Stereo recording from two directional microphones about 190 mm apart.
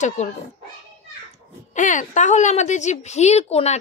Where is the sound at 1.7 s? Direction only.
40° left (ahead or behind).